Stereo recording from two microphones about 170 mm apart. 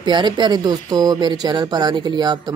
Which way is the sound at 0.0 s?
25° right (ahead or behind).